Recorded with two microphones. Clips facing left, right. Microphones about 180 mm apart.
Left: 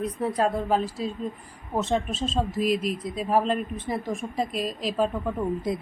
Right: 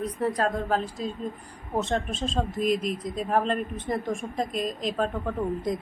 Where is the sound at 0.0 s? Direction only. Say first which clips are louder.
Left 1 dB; 5° left (ahead or behind).